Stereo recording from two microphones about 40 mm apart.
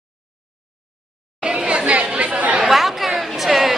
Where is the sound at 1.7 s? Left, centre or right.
Right.